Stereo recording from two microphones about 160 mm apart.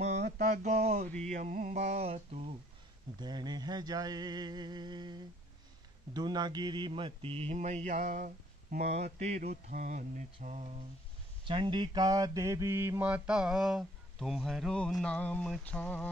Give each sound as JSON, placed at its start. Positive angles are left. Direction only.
{"t": 0.0, "sound": "mantra", "side_deg": -45}
{"t": 1.3, "sound": "speech", "side_deg": -50}
{"t": 3.2, "sound": "a sound", "side_deg": -25}
{"t": 6.1, "sound": "mantra", "side_deg": -25}
{"t": 9.2, "sound": "speech", "side_deg": -45}
{"t": 11.4, "sound": "mantra", "side_deg": -30}